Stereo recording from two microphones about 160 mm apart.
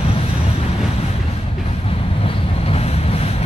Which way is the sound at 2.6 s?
40° left (ahead or behind).